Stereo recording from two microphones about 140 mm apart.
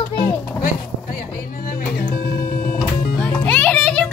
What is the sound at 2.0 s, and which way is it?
Music, 90° left.